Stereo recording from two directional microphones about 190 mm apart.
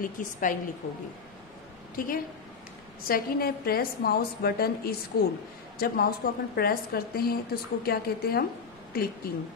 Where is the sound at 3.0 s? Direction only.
50° left (ahead or behind).